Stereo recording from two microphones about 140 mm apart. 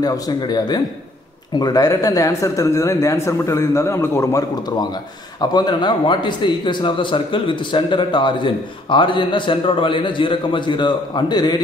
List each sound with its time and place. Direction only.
0.0 s a man's voice: 30° left (ahead or behind)